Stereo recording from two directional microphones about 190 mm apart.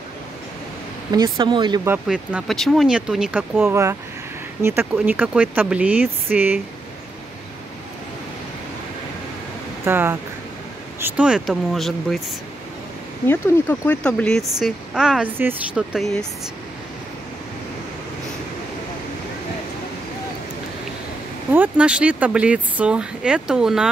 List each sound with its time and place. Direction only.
1.4 s speech: 25° right (ahead or behind)
1.9 s speech: 5° right (ahead or behind)
4.9 s speech: 10° right (ahead or behind)
9.8 s speech: 10° right (ahead or behind)
13.3 s speech: 10° left (ahead or behind)
21.5 s speech: 5° right (ahead or behind)